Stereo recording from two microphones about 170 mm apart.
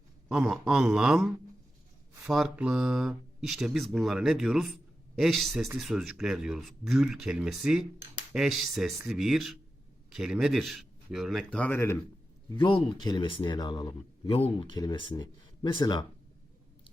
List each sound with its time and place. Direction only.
0.3 s speech: 5° right (ahead or behind); by 11.9 s 10° left (ahead or behind)
12.5 s speech: 30° left (ahead or behind)